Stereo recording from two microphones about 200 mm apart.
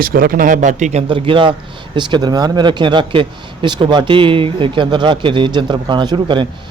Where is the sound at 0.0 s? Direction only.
45° right (ahead or behind).